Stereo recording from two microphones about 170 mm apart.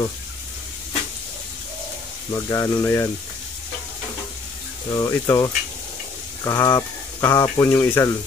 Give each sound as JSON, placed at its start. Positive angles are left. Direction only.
{"t": 2.3, "sound": "speech", "side_deg": 20}
{"t": 4.9, "sound": "speech", "side_deg": 20}